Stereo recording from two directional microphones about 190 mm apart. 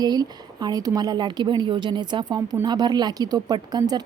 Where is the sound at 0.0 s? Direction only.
20° right (ahead or behind).